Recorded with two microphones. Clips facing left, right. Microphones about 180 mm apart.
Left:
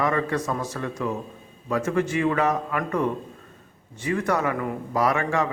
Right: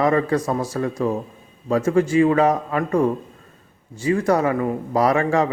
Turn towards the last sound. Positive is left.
turn(degrees=-35)  # may be behind; listen again after turning